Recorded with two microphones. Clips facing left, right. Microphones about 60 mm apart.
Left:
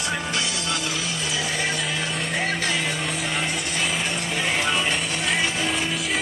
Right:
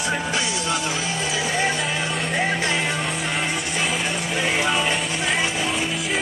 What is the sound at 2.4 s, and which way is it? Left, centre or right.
Music, centre.